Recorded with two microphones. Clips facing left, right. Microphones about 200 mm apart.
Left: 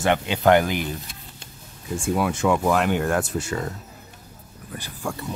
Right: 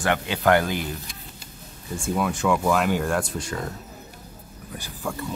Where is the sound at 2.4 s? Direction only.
25° left (ahead or behind).